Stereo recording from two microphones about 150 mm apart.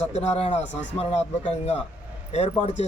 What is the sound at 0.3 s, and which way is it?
Speech, 45° left (ahead or behind).